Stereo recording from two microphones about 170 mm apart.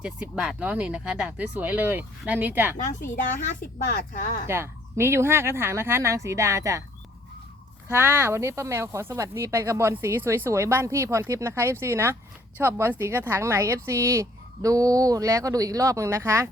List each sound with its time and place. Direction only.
0.0 s speech: 5° right (ahead or behind)
2.7 s a woman's voice: 50° left (ahead or behind)
4.4 s speech: 15° right (ahead or behind)
7.9 s speech: 15° right (ahead or behind)